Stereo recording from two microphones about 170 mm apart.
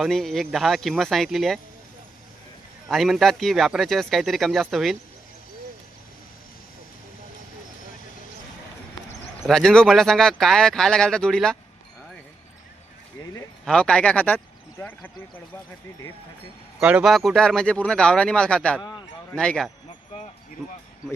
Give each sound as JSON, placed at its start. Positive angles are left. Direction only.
{"t": 0.0, "sound": "speech", "side_deg": 0}
{"t": 2.9, "sound": "speech", "side_deg": 0}
{"t": 9.5, "sound": "speech", "side_deg": 5}
{"t": 13.7, "sound": "speech", "side_deg": 5}
{"t": 16.8, "sound": "speech", "side_deg": -5}
{"t": 18.8, "sound": "speech", "side_deg": 25}
{"t": 19.3, "sound": "speech", "side_deg": 5}